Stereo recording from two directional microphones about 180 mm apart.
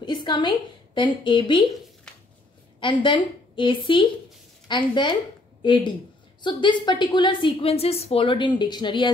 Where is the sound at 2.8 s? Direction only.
25° left (ahead or behind).